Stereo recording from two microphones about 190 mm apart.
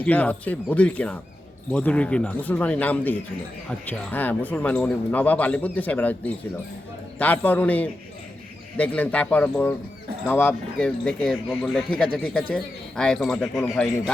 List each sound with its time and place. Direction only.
0.0 s speech: 10° left (ahead or behind)